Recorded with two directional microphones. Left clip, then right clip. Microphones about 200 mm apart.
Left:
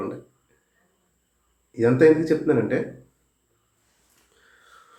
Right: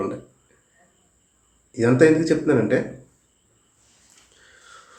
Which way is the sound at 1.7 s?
5° right (ahead or behind).